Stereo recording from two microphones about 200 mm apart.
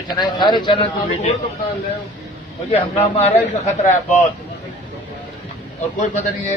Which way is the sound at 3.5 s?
35° left (ahead or behind).